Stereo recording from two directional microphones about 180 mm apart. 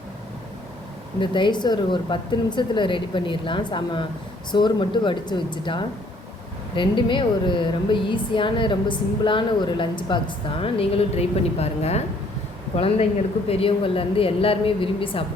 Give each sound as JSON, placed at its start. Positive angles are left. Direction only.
{"t": 1.2, "sound": "a woman's voice", "side_deg": 25}